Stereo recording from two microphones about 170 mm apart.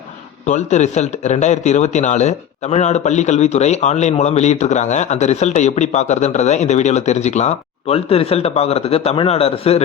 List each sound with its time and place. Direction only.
0.4 s a man's voice: 45° left (ahead or behind)